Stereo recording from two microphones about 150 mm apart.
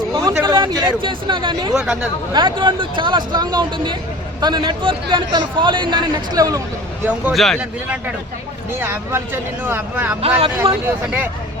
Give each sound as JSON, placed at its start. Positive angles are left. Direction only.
{"t": 0.1, "sound": "a sound", "side_deg": -25}
{"t": 0.4, "sound": "a man's voice", "side_deg": -30}
{"t": 1.7, "sound": "speech", "side_deg": -5}
{"t": 2.3, "sound": "a man's voice", "side_deg": -30}
{"t": 7.0, "sound": "speech", "side_deg": -10}
{"t": 7.3, "sound": "speech", "side_deg": 0}
{"t": 8.7, "sound": "speech", "side_deg": -15}
{"t": 10.2, "sound": "a man's voice", "side_deg": -40}
{"t": 10.8, "sound": "speech", "side_deg": -10}